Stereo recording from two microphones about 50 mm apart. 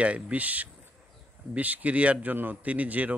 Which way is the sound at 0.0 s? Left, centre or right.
Right.